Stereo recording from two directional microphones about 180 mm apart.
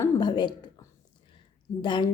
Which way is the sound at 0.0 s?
25° left (ahead or behind).